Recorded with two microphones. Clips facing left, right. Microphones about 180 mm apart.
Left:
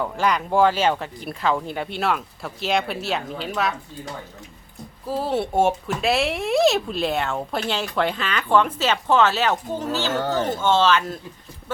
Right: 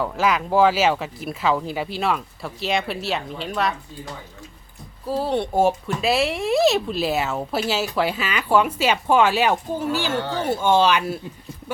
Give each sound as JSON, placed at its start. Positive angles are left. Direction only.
{"t": 0.0, "sound": "speech", "side_deg": -5}
{"t": 5.0, "sound": "speech", "side_deg": 0}
{"t": 10.2, "sound": "speech", "side_deg": 45}
{"t": 10.4, "sound": "speech", "side_deg": -10}